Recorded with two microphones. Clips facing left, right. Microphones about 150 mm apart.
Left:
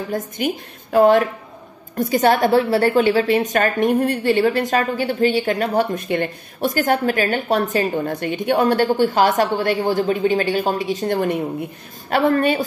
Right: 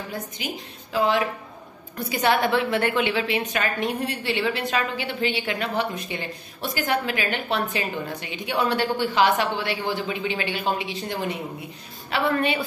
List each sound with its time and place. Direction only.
0.1 s a woman's voice: 45° left (ahead or behind)